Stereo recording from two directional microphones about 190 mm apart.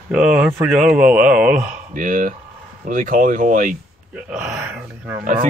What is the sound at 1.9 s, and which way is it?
Speech, 45° right (ahead or behind).